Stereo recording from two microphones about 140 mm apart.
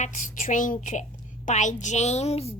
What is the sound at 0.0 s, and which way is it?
A woman's voice, 65° left (ahead or behind).